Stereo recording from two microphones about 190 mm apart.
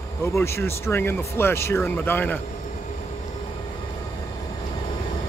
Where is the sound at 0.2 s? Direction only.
15° left (ahead or behind).